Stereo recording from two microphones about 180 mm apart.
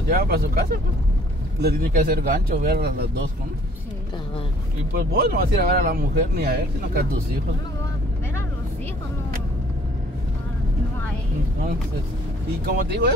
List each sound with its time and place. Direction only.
0.1 s speech: 55° right (ahead or behind)
4.9 s speech: 55° right (ahead or behind)
12.6 s speech: 60° right (ahead or behind)